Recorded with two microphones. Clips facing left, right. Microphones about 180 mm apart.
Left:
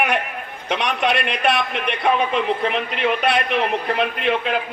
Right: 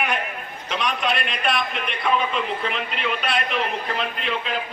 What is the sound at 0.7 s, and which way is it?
A man's voice, 65° left (ahead or behind).